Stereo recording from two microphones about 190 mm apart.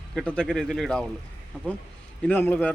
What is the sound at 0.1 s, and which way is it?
Speech, 5° left (ahead or behind).